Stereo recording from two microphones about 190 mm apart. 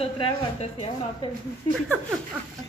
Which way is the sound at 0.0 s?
30° left (ahead or behind).